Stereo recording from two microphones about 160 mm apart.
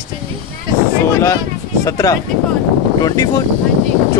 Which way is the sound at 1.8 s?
20° left (ahead or behind).